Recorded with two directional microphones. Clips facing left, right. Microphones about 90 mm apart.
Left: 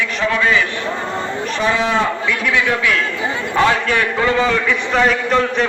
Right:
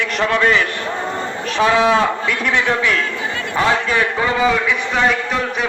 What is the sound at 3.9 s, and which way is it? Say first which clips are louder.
Speech: left 1 dB; 20° right (ahead or behind).